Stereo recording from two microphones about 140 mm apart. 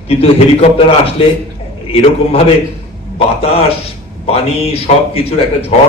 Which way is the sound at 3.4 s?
45° left (ahead or behind).